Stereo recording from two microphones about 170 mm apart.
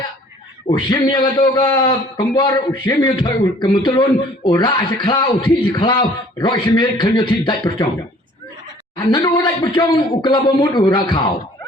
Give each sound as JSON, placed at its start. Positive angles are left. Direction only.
{"t": 0.9, "sound": "speech", "side_deg": 30}
{"t": 9.0, "sound": "speech", "side_deg": 20}